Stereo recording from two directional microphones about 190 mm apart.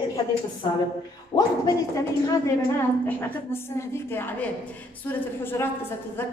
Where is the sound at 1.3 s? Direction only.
20° left (ahead or behind).